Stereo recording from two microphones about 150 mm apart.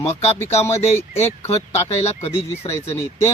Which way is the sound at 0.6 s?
15° left (ahead or behind).